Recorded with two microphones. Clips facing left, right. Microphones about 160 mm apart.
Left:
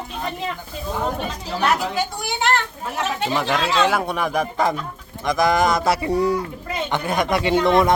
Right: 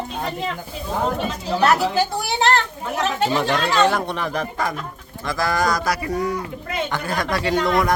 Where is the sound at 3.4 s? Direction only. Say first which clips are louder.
Even; centre (ahead or behind).